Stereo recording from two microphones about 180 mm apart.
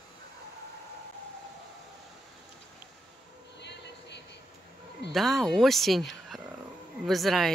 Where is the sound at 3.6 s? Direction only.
70° left (ahead or behind).